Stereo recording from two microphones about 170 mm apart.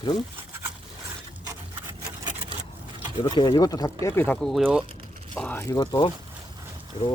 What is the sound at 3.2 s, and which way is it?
Speech, 25° left (ahead or behind).